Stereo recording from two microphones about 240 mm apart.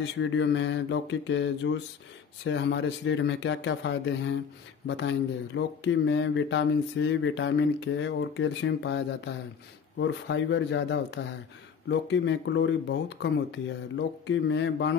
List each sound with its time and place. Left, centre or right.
0.0 s speech: left